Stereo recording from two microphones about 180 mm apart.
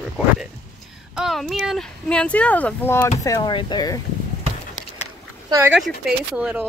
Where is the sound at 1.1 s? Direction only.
Centre (ahead or behind).